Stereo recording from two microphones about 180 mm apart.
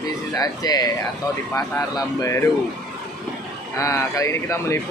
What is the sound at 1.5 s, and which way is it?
Speech, 20° left (ahead or behind).